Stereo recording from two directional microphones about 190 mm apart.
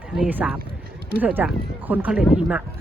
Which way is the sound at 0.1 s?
5° right (ahead or behind).